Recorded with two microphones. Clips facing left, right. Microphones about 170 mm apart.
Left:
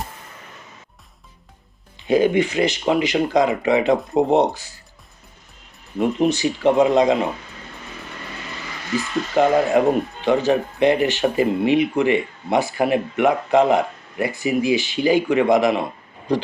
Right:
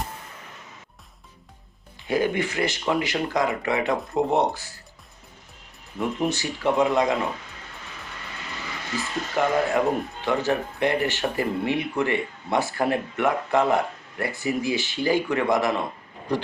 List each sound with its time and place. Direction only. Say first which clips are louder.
2.0 s speech: left 7 dB; 20° left (ahead or behind)
6.0 s speech: left 7 dB; 20° left (ahead or behind)
9.3 s speech: left 6 dB; 20° left (ahead or behind)